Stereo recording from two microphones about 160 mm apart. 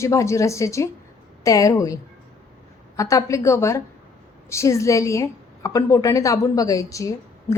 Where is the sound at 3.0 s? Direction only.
20° left (ahead or behind).